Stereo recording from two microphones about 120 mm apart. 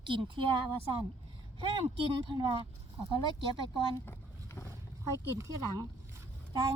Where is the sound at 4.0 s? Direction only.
20° left (ahead or behind).